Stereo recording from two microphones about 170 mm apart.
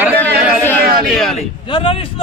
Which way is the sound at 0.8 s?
60° right (ahead or behind).